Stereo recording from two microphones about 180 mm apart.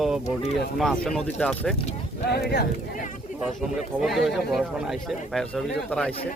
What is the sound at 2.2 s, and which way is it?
Speech, 65° left (ahead or behind).